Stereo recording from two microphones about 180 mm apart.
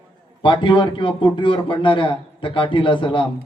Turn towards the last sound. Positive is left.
turn(degrees=25)  # may be behind; listen again after turning